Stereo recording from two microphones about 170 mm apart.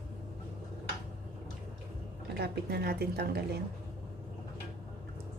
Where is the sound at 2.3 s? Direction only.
70° right (ahead or behind).